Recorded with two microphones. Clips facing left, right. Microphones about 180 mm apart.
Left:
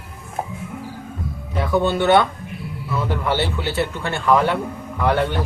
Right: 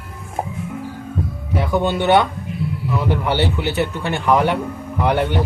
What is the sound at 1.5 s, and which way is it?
A man's voice, 15° right (ahead or behind).